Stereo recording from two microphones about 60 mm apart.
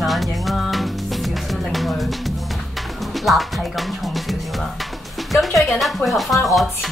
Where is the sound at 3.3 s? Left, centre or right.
Centre.